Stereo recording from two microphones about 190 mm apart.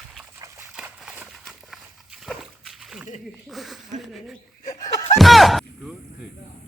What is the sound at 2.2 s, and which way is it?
Splash, centre (ahead or behind).